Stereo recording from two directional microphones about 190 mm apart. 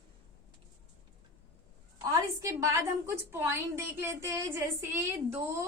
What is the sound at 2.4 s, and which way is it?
A woman's voice, 15° right (ahead or behind).